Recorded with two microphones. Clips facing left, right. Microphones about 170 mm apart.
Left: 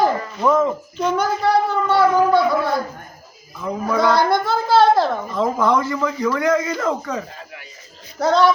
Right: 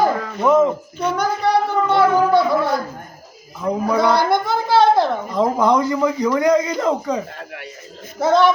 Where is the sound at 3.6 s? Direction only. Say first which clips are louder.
Right 2 dB; 15° right (ahead or behind).